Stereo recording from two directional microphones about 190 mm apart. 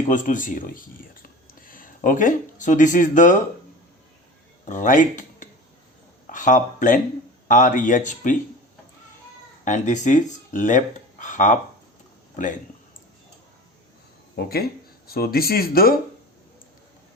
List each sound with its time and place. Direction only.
0.1 s speech: 40° left (ahead or behind)
4.6 s speech: 40° left (ahead or behind)
6.2 s a sound: 40° left (ahead or behind)
7.4 s speech: 45° left (ahead or behind)
9.6 s speech: 40° left (ahead or behind)
14.3 s speech: 55° left (ahead or behind)